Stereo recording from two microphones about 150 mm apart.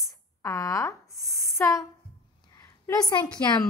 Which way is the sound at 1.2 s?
Centre (ahead or behind).